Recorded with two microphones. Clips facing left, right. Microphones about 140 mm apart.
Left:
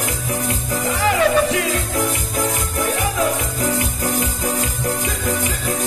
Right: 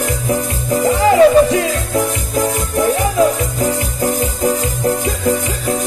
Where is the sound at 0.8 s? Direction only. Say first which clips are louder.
Right 8 dB; 30° right (ahead or behind).